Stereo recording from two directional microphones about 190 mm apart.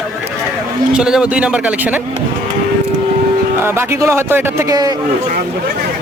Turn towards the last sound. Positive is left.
turn(degrees=-20)  # may be behind; listen again after turning